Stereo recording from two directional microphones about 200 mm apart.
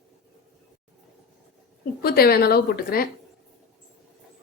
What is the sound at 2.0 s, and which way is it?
A woman's voice, 50° left (ahead or behind).